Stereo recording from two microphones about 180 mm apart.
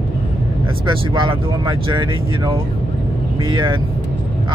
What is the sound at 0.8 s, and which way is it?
Speech, 25° right (ahead or behind).